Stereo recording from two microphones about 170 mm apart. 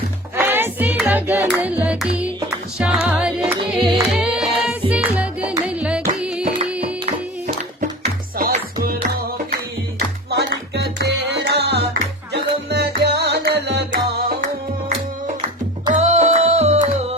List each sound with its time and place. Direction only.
0.3 s music: 10° right (ahead or behind)
1.0 s hands: 10° right (ahead or behind)
1.5 s music: 10° right (ahead or behind)
7.0 s music: 40° right (ahead or behind)
10.8 s music: 85° right
15.9 s music: 40° right (ahead or behind)